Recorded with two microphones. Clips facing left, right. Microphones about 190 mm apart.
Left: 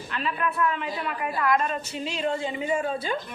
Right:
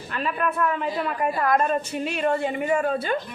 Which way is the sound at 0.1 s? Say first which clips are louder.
Right 3 dB; 50° right (ahead or behind).